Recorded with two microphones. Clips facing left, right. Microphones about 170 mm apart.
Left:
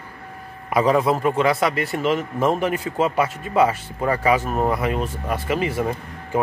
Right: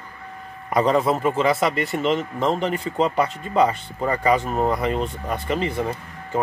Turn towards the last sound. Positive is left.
turn(degrees=5)  # may be behind; listen again after turning